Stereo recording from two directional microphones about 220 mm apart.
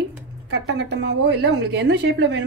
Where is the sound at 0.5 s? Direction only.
50° right (ahead or behind).